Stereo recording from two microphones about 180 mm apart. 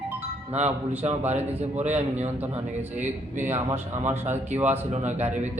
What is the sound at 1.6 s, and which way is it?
Speech, 40° right (ahead or behind).